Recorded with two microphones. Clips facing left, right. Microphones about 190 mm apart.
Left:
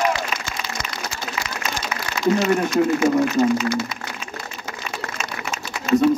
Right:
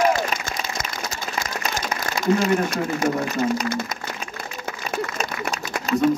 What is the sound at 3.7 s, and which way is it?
Speech, 50° right (ahead or behind).